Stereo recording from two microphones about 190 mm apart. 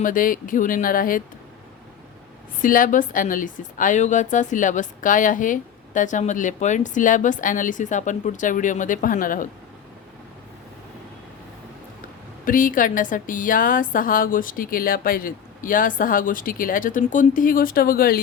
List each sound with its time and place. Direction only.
0.0 s a woman's voice: 45° left (ahead or behind)
2.6 s a woman's voice: 45° left (ahead or behind)
12.5 s a woman's voice: 45° left (ahead or behind)